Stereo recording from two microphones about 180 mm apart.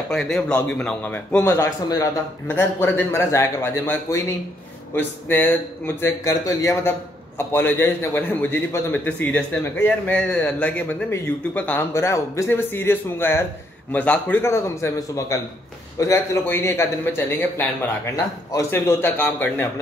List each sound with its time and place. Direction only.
0.1 s a man's voice: centre (ahead or behind)